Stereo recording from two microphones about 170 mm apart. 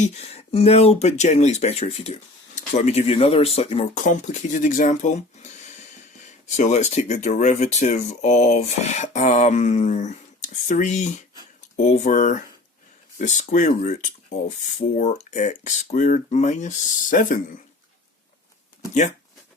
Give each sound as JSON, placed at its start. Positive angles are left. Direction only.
{"t": 0.0, "sound": "speech", "side_deg": 40}